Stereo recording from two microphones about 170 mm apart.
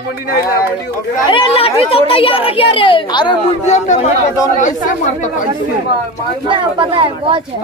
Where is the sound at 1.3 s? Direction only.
35° left (ahead or behind).